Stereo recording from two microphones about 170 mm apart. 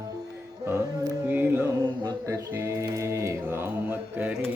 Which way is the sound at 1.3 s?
10° right (ahead or behind).